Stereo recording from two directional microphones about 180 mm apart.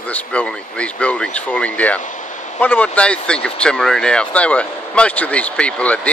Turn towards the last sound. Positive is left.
turn(degrees=5)  # may be behind; listen again after turning